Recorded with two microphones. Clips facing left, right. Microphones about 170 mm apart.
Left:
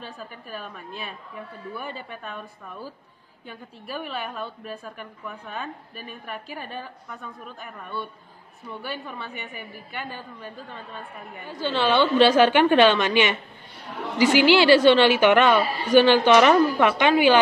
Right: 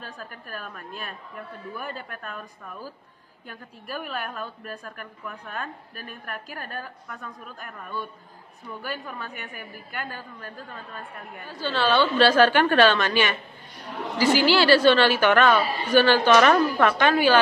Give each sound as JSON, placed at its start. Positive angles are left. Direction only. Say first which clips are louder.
{"t": 0.2, "sound": "a woman's voice", "louder": "left 1 dB", "side_deg": 0}
{"t": 4.0, "sound": "a woman's voice", "louder": "left 1 dB", "side_deg": 0}
{"t": 7.1, "sound": "a woman's voice", "louder": "even", "side_deg": 0}
{"t": 10.7, "sound": "a woman's voice", "louder": "left 1 dB", "side_deg": 0}
{"t": 11.4, "sound": "a woman's voice", "louder": "left 1 dB", "side_deg": 20}